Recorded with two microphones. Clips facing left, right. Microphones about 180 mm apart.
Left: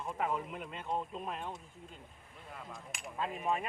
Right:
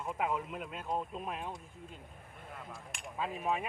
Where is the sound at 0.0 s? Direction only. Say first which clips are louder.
Right 1 dB; 5° right (ahead or behind).